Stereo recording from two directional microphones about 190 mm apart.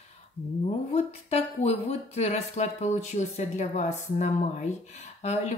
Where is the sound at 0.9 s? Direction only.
35° left (ahead or behind).